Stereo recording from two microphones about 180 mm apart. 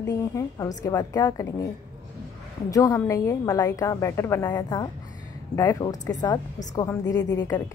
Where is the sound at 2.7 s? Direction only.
20° left (ahead or behind).